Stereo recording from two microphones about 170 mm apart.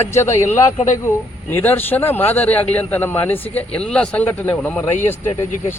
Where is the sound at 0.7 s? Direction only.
45° left (ahead or behind).